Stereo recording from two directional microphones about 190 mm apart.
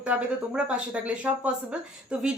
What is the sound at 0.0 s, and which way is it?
A woman's voice, 5° right (ahead or behind).